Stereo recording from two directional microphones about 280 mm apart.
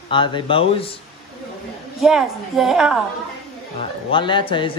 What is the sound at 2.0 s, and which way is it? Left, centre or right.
A woman's voice, centre.